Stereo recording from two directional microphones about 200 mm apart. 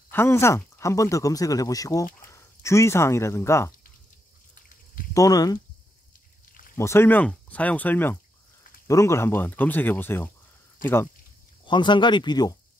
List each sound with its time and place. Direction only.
0.1 s speech: 10° left (ahead or behind)
5.1 s speech: 15° left (ahead or behind)
6.8 s speech: 10° left (ahead or behind)
11.6 s speech: 20° left (ahead or behind)